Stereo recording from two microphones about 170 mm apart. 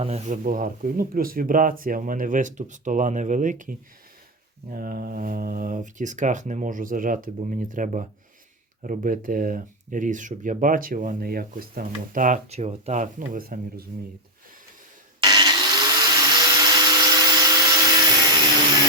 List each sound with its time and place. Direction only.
0.0 s speech: 40° right (ahead or behind); by 13.8 s 55° right (ahead or behind)
15.2 s vacuum cleaner: 25° right (ahead or behind)